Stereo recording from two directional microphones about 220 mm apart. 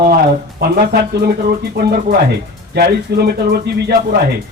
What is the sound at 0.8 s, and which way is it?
Speech, 45° right (ahead or behind).